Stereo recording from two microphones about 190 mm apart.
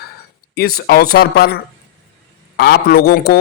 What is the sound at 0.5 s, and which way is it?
A man's voice, 55° left (ahead or behind).